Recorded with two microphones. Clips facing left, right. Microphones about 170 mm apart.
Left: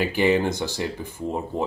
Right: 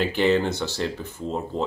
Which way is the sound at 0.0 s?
10° left (ahead or behind).